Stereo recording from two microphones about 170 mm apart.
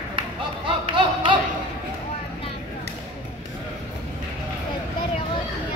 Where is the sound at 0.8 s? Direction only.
30° right (ahead or behind).